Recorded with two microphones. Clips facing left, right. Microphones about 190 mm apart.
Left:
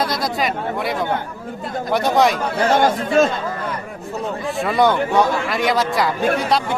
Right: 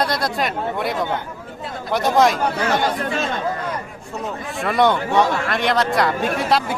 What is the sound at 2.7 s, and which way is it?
Speech, 50° left (ahead or behind).